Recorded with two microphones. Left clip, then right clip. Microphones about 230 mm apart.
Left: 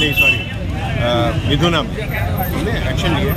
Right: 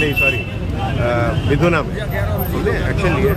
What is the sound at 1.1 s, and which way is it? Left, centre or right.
Speech, centre.